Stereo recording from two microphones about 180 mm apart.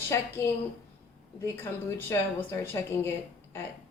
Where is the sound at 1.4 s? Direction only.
15° left (ahead or behind).